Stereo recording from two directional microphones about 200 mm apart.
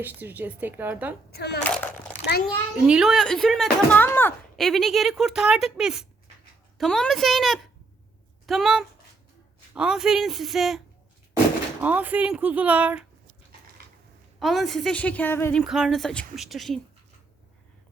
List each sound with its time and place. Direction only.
0.0 s speech: 10° right (ahead or behind)
1.3 s a woman's voice: 55° left (ahead or behind)
1.6 s speech: 10° left (ahead or behind)
2.8 s speech: 5° right (ahead or behind)
4.0 s speech: 10° left (ahead or behind); by 13.1 s 10° right (ahead or behind)
14.3 s speech: centre (ahead or behind)
15.6 s speech: centre (ahead or behind)